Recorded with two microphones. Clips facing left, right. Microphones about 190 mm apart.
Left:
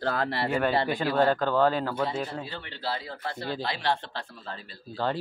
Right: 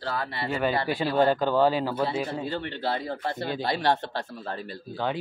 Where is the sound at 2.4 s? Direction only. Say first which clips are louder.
Right 6 dB; 55° right (ahead or behind).